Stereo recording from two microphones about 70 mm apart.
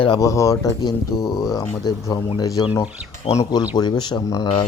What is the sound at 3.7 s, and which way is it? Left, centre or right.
Speech, left.